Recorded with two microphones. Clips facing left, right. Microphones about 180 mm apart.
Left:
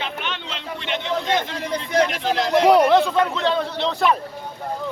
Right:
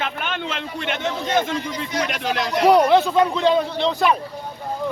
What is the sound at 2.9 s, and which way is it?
A man's voice, 5° right (ahead or behind).